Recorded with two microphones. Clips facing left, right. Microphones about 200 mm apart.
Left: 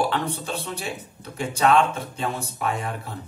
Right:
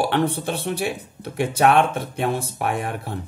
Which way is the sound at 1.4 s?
60° right (ahead or behind).